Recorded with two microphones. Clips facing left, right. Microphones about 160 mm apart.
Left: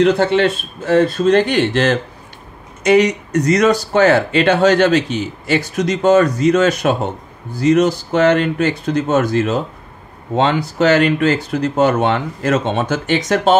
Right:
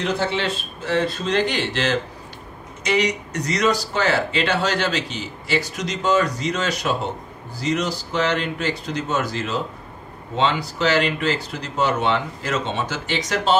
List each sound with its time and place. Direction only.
0.0 s speech: 60° left (ahead or behind)